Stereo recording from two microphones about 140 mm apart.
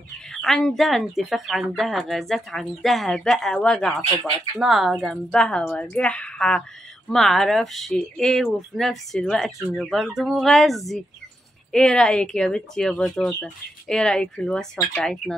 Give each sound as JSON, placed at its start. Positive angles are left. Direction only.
{"t": 0.3, "sound": "speech", "side_deg": 5}